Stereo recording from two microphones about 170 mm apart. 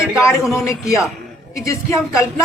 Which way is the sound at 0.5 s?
15° left (ahead or behind).